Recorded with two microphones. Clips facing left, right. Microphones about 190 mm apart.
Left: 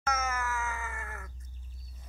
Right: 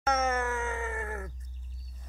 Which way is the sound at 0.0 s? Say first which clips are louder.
Right 5 dB; 30° right (ahead or behind).